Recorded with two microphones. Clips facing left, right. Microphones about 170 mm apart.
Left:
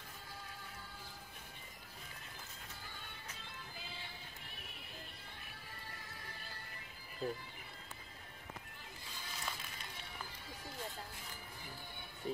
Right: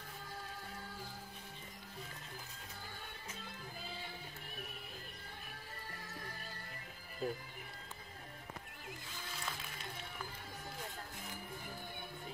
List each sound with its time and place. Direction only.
7.2 s speech: 5° right (ahead or behind)